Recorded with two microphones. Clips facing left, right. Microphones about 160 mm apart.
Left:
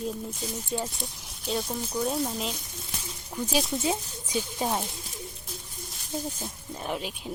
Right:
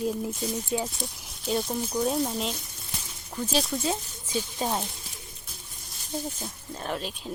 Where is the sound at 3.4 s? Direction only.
15° left (ahead or behind).